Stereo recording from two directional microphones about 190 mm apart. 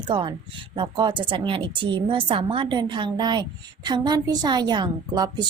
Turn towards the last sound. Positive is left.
turn(degrees=-20)  # may be behind; listen again after turning